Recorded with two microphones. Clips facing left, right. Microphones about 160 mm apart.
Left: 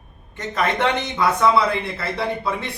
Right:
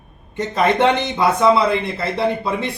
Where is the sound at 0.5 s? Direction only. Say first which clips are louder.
Right 5 dB; 25° right (ahead or behind).